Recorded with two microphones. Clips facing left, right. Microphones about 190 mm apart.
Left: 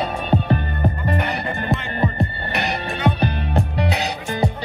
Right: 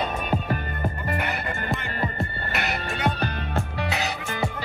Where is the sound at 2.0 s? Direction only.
20° left (ahead or behind).